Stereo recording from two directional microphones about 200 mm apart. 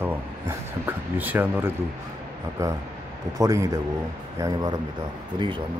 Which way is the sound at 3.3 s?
15° right (ahead or behind).